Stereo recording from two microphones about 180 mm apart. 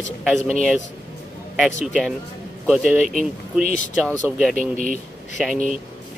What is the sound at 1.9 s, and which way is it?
A man's voice, centre (ahead or behind).